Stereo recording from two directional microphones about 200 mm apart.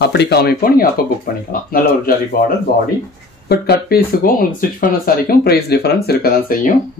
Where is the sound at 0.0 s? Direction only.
55° left (ahead or behind).